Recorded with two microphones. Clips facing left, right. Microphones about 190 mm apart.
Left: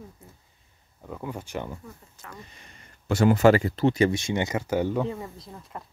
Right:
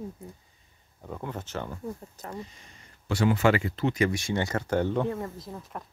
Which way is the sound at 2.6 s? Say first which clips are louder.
Left 2 dB; 45° left (ahead or behind).